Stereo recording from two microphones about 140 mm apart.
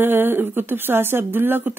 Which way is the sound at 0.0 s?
15° right (ahead or behind).